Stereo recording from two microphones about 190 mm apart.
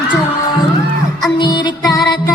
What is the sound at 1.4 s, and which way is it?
Music, 25° left (ahead or behind).